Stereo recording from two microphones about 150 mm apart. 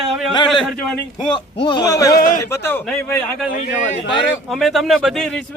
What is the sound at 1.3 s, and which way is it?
Speech, 30° left (ahead or behind).